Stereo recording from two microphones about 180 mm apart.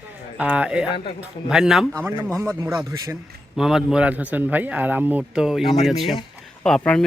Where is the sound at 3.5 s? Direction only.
5° right (ahead or behind).